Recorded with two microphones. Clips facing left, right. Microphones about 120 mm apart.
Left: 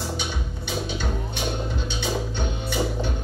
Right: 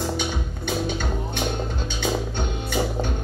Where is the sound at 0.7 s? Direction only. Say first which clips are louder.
Right 3 dB; 50° right (ahead or behind).